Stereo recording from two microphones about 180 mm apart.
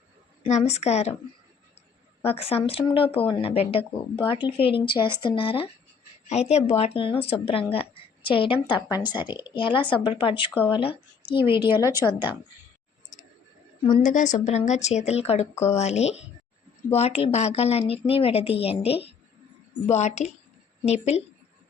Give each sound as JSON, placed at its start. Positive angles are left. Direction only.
{"t": 0.4, "sound": "a woman's voice", "side_deg": 40}
{"t": 2.2, "sound": "a woman's voice", "side_deg": 30}
{"t": 8.9, "sound": "speech", "side_deg": -10}
{"t": 9.2, "sound": "speech", "side_deg": 25}
{"t": 11.7, "sound": "speech", "side_deg": -15}
{"t": 13.9, "sound": "a woman's voice", "side_deg": 45}